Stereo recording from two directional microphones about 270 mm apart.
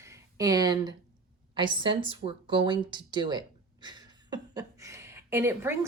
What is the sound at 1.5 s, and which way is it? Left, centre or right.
Speech, centre.